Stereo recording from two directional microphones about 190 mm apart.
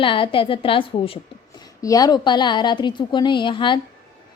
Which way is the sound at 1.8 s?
20° left (ahead or behind).